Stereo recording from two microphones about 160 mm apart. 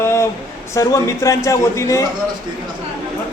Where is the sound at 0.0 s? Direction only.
15° left (ahead or behind).